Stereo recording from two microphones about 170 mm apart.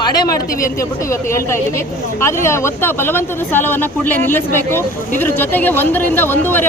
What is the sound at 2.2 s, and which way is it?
Speech, 15° left (ahead or behind).